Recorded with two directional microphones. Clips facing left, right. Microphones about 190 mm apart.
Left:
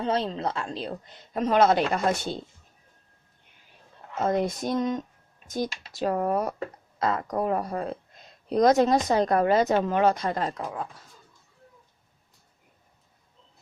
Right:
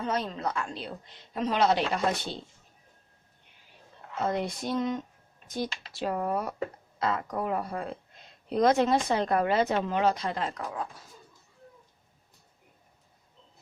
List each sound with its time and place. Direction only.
0.0 s speech: 30° left (ahead or behind)
0.8 s speech: 45° left (ahead or behind)
4.2 s speech: 45° left (ahead or behind)